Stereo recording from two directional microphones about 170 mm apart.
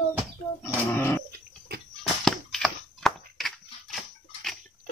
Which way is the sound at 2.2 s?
Centre (ahead or behind).